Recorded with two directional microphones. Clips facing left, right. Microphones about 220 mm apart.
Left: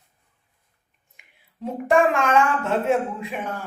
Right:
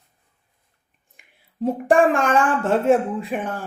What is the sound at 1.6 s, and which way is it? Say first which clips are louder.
Speech: right 3 dB; 35° right (ahead or behind).